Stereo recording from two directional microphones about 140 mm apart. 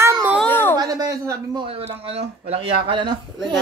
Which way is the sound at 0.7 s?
25° right (ahead or behind).